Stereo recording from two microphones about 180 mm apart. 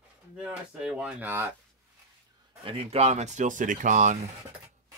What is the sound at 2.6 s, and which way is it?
Speech, 30° right (ahead or behind).